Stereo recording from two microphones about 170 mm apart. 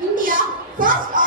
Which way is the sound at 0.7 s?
55° right (ahead or behind).